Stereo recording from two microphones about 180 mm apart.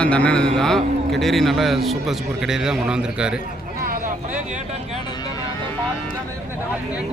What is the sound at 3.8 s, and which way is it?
Vehicle, 50° right (ahead or behind).